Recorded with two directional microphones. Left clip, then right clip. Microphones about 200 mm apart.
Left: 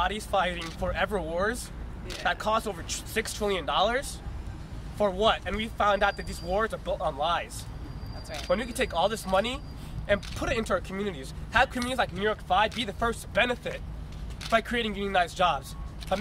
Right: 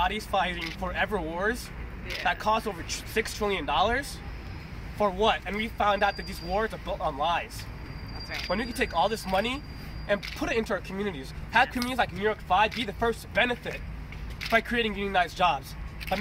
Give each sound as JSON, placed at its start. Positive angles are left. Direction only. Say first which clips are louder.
{"t": 0.0, "sound": "speech", "louder": "even", "side_deg": 15}
{"t": 5.1, "sound": "speech", "louder": "even", "side_deg": 15}
{"t": 8.5, "sound": "speech", "louder": "left 2 dB", "side_deg": 20}